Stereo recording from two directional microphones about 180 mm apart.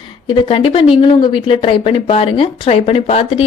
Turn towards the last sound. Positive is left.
turn(degrees=35)  # may be behind; listen again after turning